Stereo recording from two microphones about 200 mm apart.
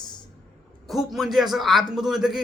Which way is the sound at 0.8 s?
Centre (ahead or behind).